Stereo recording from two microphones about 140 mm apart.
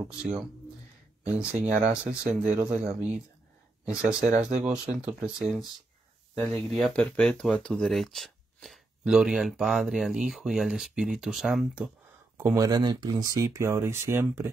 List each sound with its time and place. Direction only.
0.1 s speech: 5° right (ahead or behind)
12.4 s speech: 20° right (ahead or behind)